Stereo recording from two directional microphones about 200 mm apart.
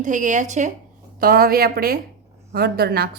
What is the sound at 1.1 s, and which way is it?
A woman's voice, 50° right (ahead or behind).